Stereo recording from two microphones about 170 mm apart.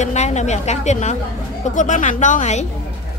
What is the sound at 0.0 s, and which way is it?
A woman's voice, 40° left (ahead or behind).